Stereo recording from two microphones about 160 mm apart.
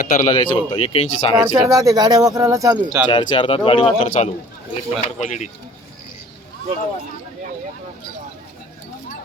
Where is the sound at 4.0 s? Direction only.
50° left (ahead or behind).